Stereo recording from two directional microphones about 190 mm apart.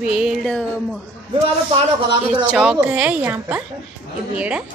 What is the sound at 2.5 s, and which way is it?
A woman's voice, 5° right (ahead or behind).